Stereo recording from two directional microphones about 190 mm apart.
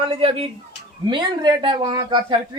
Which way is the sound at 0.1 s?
30° right (ahead or behind).